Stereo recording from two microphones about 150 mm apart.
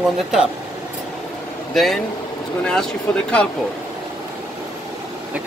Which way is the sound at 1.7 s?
Centre (ahead or behind).